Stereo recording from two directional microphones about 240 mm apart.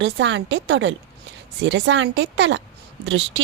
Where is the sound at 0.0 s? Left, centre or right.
Right.